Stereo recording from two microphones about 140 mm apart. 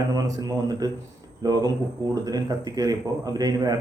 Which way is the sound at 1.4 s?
25° right (ahead or behind).